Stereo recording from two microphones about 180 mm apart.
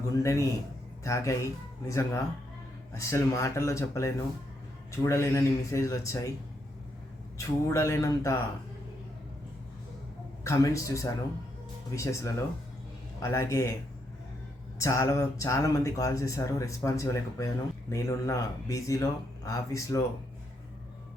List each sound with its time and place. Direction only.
0.2 s speech: 15° left (ahead or behind)
7.3 s speech: 15° left (ahead or behind)
10.4 s speech: 15° left (ahead or behind)
14.8 s speech: 15° left (ahead or behind)